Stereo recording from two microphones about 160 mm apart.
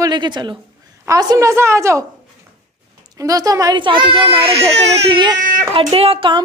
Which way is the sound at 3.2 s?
20° right (ahead or behind).